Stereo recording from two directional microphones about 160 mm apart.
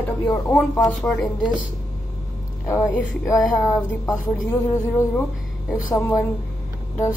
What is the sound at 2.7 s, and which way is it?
Speech, 20° left (ahead or behind).